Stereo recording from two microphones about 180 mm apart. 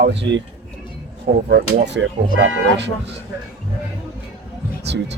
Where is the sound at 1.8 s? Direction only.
75° right (ahead or behind).